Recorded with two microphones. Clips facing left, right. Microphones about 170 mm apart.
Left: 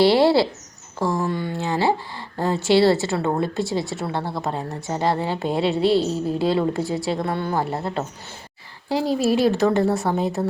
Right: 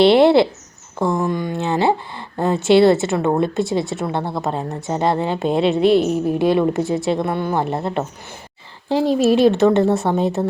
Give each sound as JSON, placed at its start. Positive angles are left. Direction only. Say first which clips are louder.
{"t": 0.0, "sound": "speech", "louder": "right 4 dB", "side_deg": -20}